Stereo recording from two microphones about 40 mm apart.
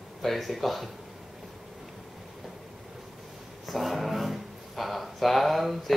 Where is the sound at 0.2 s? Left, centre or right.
Centre.